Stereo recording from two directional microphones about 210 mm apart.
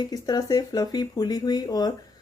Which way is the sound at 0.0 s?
20° left (ahead or behind).